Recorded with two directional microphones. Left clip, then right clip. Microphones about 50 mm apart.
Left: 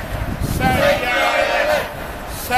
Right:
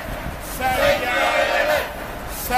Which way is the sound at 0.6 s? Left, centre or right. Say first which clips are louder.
Left 3 dB; left.